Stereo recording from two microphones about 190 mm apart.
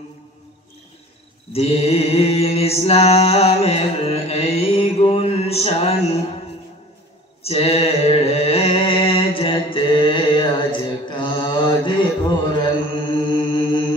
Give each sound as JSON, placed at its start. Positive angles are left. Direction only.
{"t": 1.5, "sound": "mantra", "side_deg": 30}
{"t": 7.4, "sound": "mantra", "side_deg": 30}